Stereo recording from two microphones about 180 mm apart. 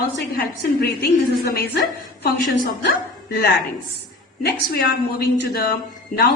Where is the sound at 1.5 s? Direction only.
60° left (ahead or behind).